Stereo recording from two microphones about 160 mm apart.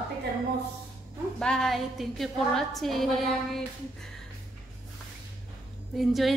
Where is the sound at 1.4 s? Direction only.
5° left (ahead or behind).